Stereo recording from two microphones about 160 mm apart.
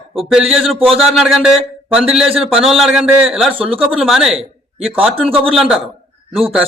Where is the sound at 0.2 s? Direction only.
Centre (ahead or behind).